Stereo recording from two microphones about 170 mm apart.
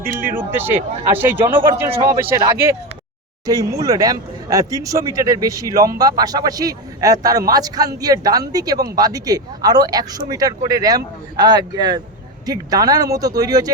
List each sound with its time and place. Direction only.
0.0 s speech: 15° right (ahead or behind)